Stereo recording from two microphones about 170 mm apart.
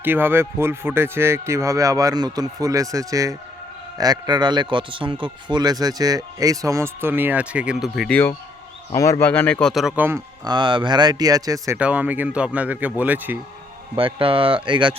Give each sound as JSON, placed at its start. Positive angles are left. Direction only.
{"t": 0.0, "sound": "a man's voice", "side_deg": -10}
{"t": 8.9, "sound": "speech", "side_deg": 15}
{"t": 10.4, "sound": "a man's voice", "side_deg": -25}
{"t": 11.8, "sound": "speech", "side_deg": -10}
{"t": 13.9, "sound": "speech", "side_deg": -30}